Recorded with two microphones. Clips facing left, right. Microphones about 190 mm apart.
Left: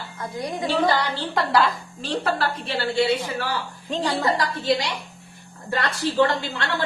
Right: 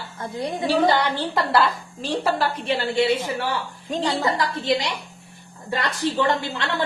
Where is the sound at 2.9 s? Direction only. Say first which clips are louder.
Left 1 dB; 25° right (ahead or behind).